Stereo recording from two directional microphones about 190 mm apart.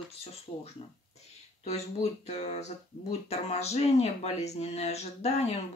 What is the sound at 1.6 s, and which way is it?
Speech, 35° left (ahead or behind).